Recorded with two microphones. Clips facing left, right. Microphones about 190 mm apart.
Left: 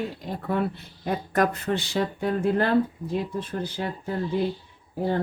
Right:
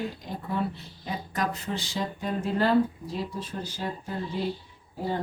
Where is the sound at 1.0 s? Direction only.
55° left (ahead or behind).